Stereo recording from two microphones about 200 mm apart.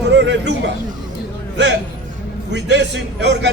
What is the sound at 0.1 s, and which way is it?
Speech, 60° right (ahead or behind).